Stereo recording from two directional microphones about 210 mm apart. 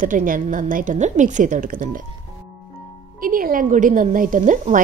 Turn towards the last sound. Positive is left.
turn(degrees=-35)  # may be behind; listen again after turning